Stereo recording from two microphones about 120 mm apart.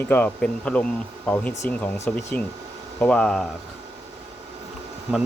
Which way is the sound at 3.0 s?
10° left (ahead or behind).